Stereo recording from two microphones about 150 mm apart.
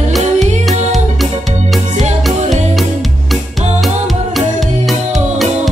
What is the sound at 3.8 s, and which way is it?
Music, centre (ahead or behind).